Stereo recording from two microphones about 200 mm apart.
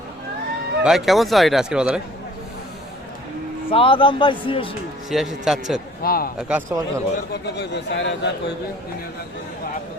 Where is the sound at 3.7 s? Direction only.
25° left (ahead or behind).